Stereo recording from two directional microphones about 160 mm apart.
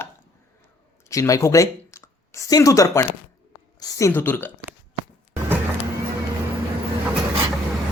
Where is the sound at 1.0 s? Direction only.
20° left (ahead or behind).